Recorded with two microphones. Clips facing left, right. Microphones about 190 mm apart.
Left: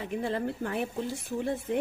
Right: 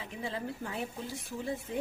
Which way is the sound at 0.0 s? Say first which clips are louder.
Left 7 dB; 60° left (ahead or behind).